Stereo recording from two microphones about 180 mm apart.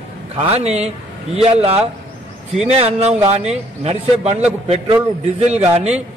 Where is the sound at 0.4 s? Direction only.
35° right (ahead or behind).